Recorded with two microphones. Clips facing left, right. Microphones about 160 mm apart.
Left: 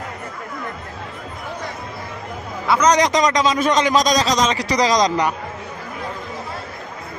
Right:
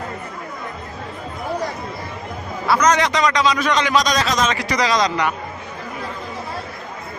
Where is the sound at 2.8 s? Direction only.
40° left (ahead or behind).